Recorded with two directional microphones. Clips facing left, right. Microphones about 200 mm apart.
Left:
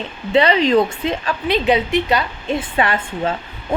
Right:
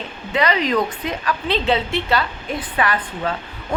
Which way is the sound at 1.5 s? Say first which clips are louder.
Left 4 dB; 15° left (ahead or behind).